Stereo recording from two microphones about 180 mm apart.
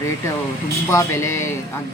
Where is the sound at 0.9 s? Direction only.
15° left (ahead or behind).